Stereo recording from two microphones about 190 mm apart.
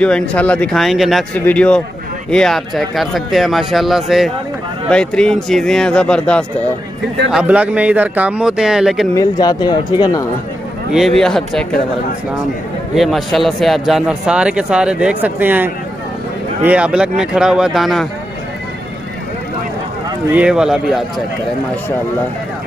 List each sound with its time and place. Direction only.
0.0 s speech: 5° left (ahead or behind)
7.2 s speech: 5° right (ahead or behind)
9.1 s speech: 20° left (ahead or behind)
10.9 s speech: centre (ahead or behind)
12.9 s speech: centre (ahead or behind)
20.2 s speech: 5° right (ahead or behind)